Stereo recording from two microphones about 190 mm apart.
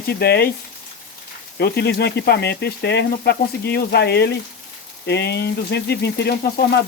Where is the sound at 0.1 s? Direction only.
55° left (ahead or behind).